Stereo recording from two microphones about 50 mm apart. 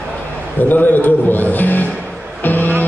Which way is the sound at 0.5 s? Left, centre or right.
Left.